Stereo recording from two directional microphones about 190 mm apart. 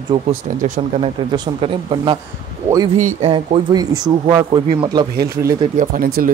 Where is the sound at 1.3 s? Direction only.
25° right (ahead or behind).